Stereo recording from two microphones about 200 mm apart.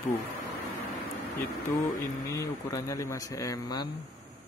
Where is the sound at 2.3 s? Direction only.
15° left (ahead or behind).